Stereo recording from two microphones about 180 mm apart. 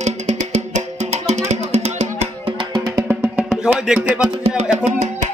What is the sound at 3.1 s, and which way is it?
Music, 5° right (ahead or behind).